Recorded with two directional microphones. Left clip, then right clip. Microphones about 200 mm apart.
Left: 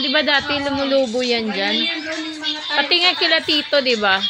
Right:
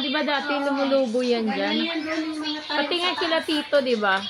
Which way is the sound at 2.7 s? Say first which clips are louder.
Left 8 dB; 20° left (ahead or behind).